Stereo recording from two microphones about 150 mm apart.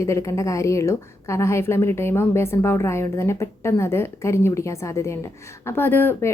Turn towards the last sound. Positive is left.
turn(degrees=15)  # may be behind; listen again after turning